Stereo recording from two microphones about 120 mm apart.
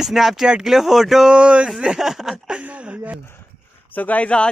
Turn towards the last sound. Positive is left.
turn(degrees=10)  # may be behind; listen again after turning